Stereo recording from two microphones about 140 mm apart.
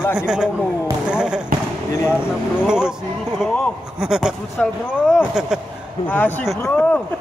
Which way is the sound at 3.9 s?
5° right (ahead or behind).